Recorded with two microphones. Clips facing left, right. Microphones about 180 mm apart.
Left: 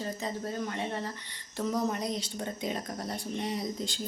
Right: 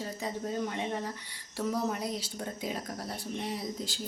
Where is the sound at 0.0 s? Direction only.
10° right (ahead or behind).